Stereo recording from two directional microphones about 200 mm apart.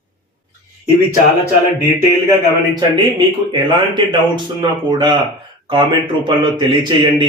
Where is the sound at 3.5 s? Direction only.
25° right (ahead or behind).